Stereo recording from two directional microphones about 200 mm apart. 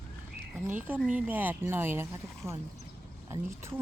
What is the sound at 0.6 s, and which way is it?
Speech, 10° right (ahead or behind).